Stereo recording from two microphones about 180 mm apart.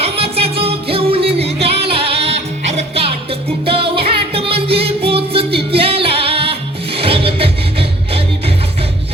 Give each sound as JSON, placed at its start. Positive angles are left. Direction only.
{"t": 0.0, "sound": "music", "side_deg": -35}